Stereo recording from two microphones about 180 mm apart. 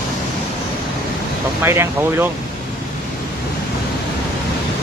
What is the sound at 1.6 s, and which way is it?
Speech, 15° right (ahead or behind).